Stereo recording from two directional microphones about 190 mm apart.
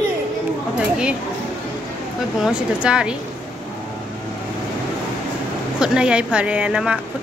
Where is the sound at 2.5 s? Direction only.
5° right (ahead or behind).